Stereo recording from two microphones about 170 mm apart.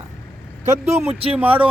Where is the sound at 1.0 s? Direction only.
35° right (ahead or behind).